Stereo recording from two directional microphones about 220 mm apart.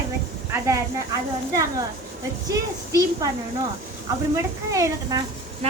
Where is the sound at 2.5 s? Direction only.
15° right (ahead or behind).